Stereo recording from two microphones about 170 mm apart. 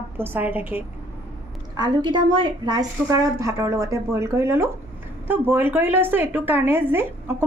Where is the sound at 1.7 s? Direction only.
25° right (ahead or behind).